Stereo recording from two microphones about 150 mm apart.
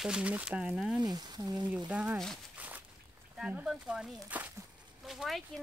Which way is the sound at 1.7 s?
10° right (ahead or behind).